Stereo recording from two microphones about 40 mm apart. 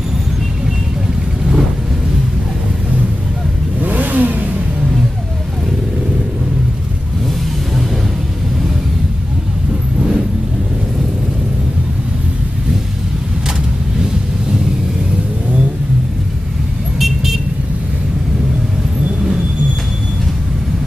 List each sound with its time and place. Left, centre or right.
3.8 s vehicle: right
9.9 s vehicle: centre
17.0 s vehicle: centre